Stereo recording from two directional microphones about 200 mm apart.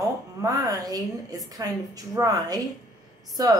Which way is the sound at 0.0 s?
15° right (ahead or behind).